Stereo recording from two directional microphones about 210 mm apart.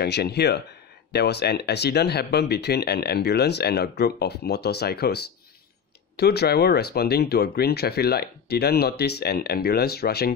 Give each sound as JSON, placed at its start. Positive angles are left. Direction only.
{"t": 0.0, "sound": "speech", "side_deg": 50}